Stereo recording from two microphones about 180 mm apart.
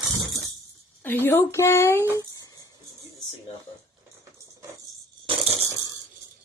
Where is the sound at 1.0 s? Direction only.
10° left (ahead or behind).